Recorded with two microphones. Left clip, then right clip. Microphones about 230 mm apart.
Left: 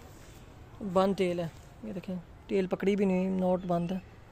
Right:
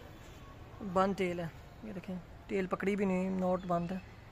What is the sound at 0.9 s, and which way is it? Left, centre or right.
A man's voice, left.